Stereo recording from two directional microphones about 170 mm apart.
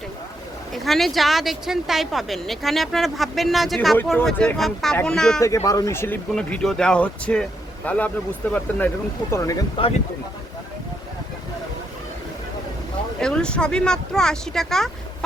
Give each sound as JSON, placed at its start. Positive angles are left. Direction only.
{"t": 0.7, "sound": "speech", "side_deg": 0}
{"t": 5.4, "sound": "speech", "side_deg": 20}
{"t": 9.3, "sound": "speech", "side_deg": 20}
{"t": 13.1, "sound": "speech", "side_deg": 5}